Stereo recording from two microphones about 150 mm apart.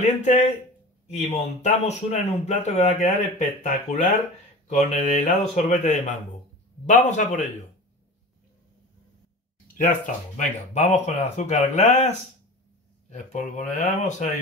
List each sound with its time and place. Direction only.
0.0 s speech: 55° left (ahead or behind)
9.8 s speech: 55° left (ahead or behind)
13.1 s speech: 55° left (ahead or behind)